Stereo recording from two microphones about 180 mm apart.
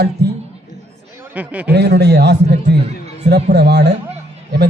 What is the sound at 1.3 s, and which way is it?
Speech, 10° right (ahead or behind).